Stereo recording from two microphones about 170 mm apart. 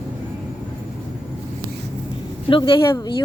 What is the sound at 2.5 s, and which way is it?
Speech, 30° left (ahead or behind).